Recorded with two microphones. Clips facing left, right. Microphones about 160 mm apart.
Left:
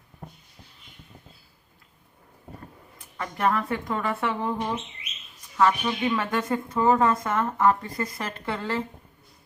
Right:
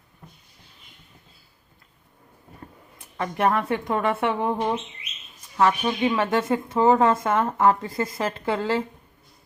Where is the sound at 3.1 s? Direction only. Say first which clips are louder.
Right 3 dB; 25° right (ahead or behind).